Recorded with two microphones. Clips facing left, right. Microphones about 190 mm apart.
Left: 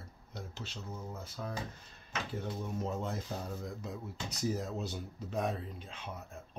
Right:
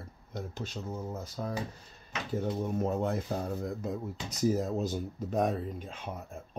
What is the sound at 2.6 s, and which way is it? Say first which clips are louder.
Speech: right 6 dB; 55° right (ahead or behind).